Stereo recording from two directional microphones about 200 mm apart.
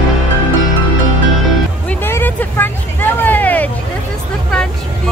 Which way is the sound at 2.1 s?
10° left (ahead or behind).